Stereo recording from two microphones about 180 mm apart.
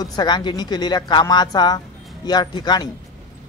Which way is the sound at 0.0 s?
20° left (ahead or behind).